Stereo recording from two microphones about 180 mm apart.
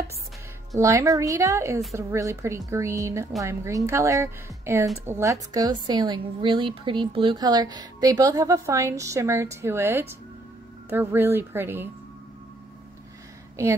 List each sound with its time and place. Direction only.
0.7 s a woman's voice: 15° right (ahead or behind)